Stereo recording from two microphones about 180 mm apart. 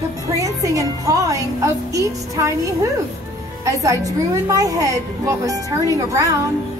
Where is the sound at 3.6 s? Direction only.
15° right (ahead or behind).